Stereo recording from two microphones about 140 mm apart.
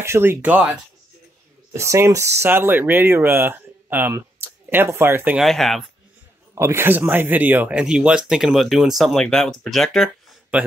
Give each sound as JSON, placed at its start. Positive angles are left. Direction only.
{"t": 0.0, "sound": "speech", "side_deg": -15}
{"t": 1.7, "sound": "speech", "side_deg": -20}
{"t": 5.4, "sound": "speech", "side_deg": 0}
{"t": 6.5, "sound": "speech", "side_deg": -20}